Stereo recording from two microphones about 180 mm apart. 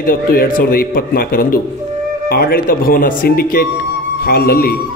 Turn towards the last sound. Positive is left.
turn(degrees=55)  # may be behind; listen again after turning